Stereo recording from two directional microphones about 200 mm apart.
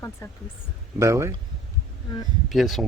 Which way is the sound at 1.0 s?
15° right (ahead or behind).